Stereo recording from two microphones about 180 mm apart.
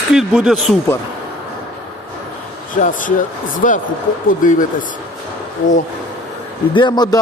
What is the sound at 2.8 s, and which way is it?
Speech, 45° left (ahead or behind).